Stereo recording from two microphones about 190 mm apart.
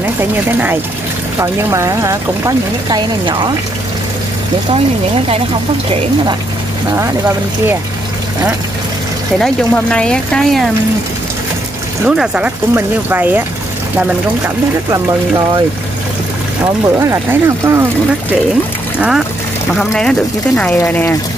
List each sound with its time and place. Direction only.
1.4 s speech: 15° right (ahead or behind)
5.3 s speech: 30° right (ahead or behind)
7.0 s speech: 10° right (ahead or behind)
9.4 s speech: 5° left (ahead or behind)
12.0 s speech: 5° right (ahead or behind)
14.9 s speech: 20° right (ahead or behind)
17.0 s speech: 15° right (ahead or behind)
18.9 s speech: 5° right (ahead or behind)